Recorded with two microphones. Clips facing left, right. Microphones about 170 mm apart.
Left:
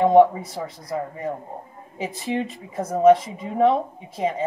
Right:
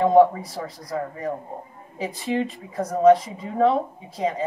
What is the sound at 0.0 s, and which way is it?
A man's voice, 25° left (ahead or behind).